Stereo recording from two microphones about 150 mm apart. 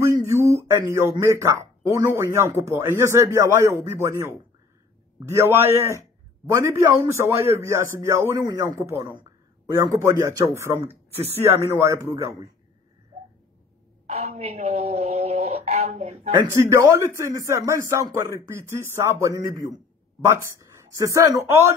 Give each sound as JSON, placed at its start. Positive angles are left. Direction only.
{"t": 0.3, "sound": "mantra", "side_deg": -20}
{"t": 1.2, "sound": "speech", "side_deg": -20}
{"t": 14.0, "sound": "speech", "side_deg": -45}
{"t": 16.4, "sound": "speech", "side_deg": -20}